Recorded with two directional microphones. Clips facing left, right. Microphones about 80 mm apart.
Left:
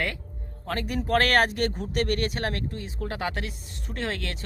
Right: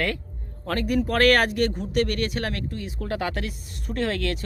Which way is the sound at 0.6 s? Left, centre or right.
Centre.